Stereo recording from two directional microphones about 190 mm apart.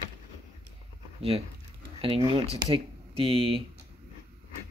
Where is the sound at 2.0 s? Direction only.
30° right (ahead or behind).